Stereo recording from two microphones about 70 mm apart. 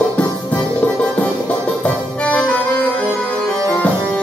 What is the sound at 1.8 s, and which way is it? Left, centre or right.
Music, centre.